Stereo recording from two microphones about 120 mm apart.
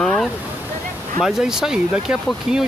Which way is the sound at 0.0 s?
5° left (ahead or behind).